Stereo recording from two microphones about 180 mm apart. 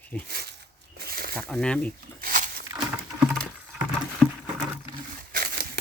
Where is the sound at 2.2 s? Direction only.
50° right (ahead or behind).